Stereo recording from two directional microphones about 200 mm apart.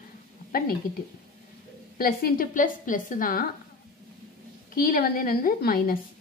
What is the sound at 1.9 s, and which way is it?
A woman's voice, 45° left (ahead or behind).